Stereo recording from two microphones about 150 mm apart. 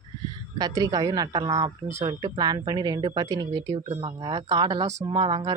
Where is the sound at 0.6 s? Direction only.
25° right (ahead or behind).